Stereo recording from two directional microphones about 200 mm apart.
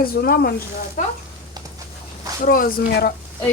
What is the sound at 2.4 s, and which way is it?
Speech, 45° left (ahead or behind).